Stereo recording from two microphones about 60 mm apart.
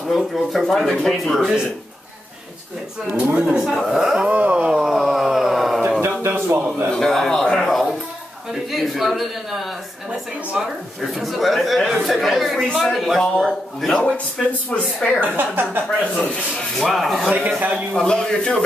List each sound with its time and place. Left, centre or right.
0.0 s speech: centre
3.1 s a man's voice: right
3.6 s a man's voice: centre
4.3 s a sound: right
4.7 s a sound: centre
5.9 s a sound: right
6.9 s a sound: centre
8.7 s speech: centre
11.0 s speech: centre
15.1 s speech: right
16.0 s a man's voice: centre
16.5 s speech: centre
17.6 s a man's voice: right
17.9 s a man's voice: centre